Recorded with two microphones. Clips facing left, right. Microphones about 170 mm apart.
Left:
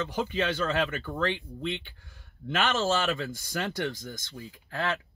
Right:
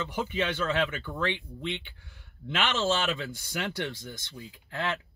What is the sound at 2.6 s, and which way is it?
Speech, 20° right (ahead or behind).